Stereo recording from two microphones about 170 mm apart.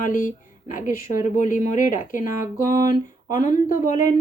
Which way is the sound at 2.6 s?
15° right (ahead or behind).